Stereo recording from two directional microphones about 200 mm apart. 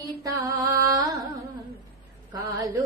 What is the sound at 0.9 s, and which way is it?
Carnatic music, 15° right (ahead or behind).